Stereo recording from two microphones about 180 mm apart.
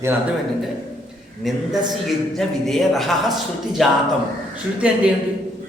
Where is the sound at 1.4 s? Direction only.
Centre (ahead or behind).